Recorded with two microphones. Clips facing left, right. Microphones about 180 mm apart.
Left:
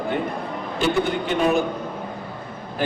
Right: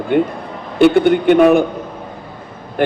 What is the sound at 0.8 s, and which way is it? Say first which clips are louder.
Speech: right 11 dB; 60° right (ahead or behind).